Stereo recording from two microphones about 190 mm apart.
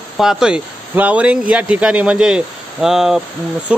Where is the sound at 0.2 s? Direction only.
5° right (ahead or behind).